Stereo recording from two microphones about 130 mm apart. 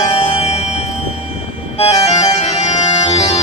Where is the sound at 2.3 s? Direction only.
60° left (ahead or behind).